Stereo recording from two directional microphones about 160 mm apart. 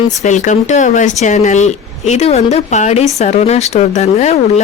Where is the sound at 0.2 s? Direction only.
50° left (ahead or behind).